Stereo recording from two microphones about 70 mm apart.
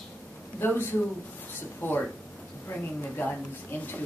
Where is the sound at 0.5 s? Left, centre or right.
Left.